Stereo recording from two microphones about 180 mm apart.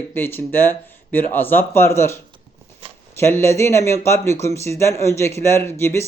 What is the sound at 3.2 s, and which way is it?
Speech, 15° left (ahead or behind).